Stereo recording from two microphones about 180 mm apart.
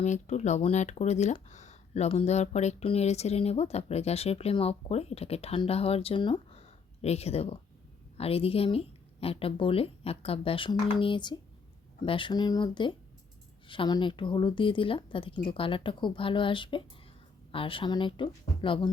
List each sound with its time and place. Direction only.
0.0 s a woman's voice: 40° left (ahead or behind)